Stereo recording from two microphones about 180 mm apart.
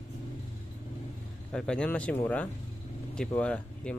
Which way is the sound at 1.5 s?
5° left (ahead or behind).